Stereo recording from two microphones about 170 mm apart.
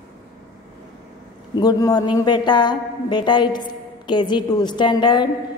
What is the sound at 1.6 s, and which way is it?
A woman's voice, 20° left (ahead or behind).